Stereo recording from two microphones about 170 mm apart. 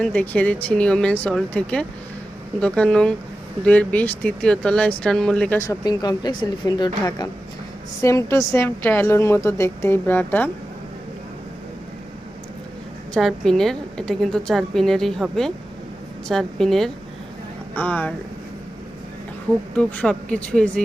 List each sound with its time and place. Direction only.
0.0 s a woman's voice: 10° left (ahead or behind)
5.5 s a woman's voice: 20° left (ahead or behind)
13.1 s a woman's voice: centre (ahead or behind)
19.7 s a woman's voice: 5° left (ahead or behind)